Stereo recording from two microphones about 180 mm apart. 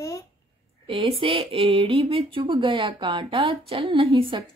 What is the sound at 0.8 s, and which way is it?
Speech, 30° right (ahead or behind).